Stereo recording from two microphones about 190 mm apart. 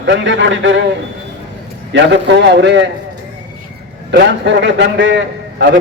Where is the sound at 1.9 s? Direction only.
65° right (ahead or behind).